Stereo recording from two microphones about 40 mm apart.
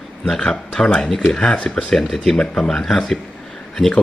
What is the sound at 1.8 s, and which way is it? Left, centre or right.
Speech, centre.